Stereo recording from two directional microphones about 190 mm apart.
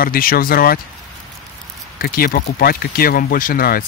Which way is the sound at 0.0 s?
50° left (ahead or behind).